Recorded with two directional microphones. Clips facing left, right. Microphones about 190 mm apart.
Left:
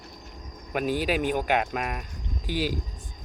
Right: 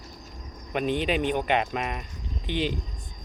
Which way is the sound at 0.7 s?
5° left (ahead or behind).